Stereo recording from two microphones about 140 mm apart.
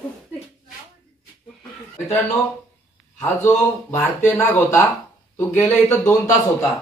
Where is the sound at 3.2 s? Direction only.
15° left (ahead or behind).